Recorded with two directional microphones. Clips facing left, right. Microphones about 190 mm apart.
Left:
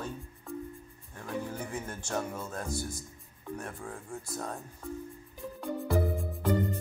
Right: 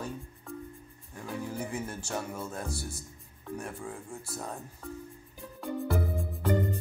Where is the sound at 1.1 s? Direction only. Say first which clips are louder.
Even; 10° right (ahead or behind).